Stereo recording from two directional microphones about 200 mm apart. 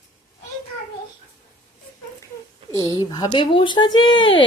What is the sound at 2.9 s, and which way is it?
Speech, 20° left (ahead or behind).